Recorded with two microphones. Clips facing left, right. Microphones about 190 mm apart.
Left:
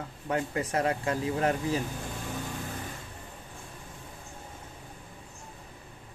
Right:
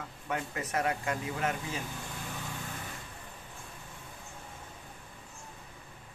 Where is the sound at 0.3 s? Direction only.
30° left (ahead or behind).